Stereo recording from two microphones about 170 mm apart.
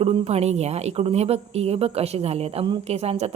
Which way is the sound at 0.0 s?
35° right (ahead or behind).